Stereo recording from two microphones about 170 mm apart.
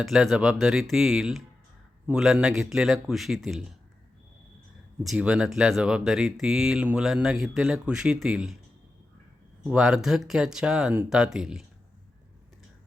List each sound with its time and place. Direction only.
0.0 s speech: centre (ahead or behind)
5.0 s speech: 5° right (ahead or behind)
9.6 s speech: 5° right (ahead or behind)